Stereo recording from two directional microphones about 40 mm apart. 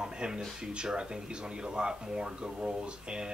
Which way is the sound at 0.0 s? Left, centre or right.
Right.